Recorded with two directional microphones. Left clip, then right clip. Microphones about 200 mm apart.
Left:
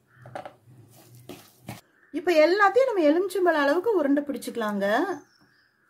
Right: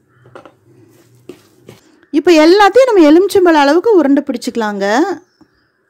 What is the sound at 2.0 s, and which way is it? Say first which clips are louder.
A woman's voice: right 12 dB; 50° right (ahead or behind).